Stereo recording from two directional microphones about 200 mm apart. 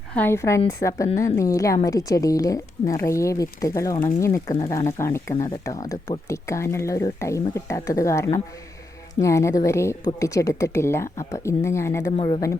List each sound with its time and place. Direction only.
0.1 s speech: 10° left (ahead or behind)
12.1 s a woman's voice: 25° left (ahead or behind)